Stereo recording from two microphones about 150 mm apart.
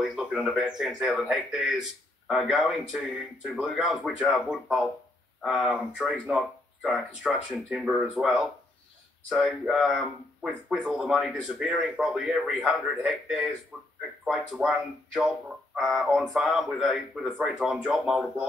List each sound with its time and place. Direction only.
0.1 s a man's voice: 5° right (ahead or behind)